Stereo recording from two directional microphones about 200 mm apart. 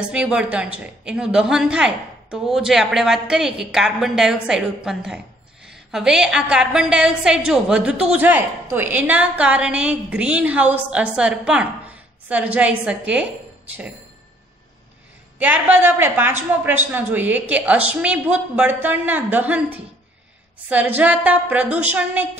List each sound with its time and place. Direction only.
0.1 s a woman's voice: 5° right (ahead or behind)
15.3 s a woman's voice: 10° right (ahead or behind)